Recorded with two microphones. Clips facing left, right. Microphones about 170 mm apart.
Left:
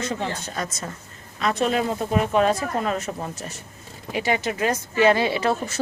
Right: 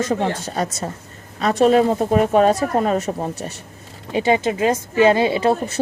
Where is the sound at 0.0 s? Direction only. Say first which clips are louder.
Right 7 dB; 45° right (ahead or behind).